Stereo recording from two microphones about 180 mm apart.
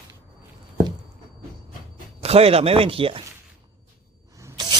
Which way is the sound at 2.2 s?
35° right (ahead or behind).